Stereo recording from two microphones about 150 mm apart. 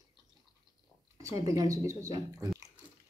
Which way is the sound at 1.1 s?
20° right (ahead or behind).